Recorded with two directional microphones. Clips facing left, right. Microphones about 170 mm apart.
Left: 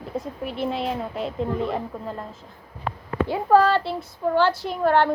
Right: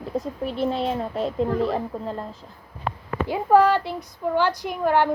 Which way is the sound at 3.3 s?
15° right (ahead or behind).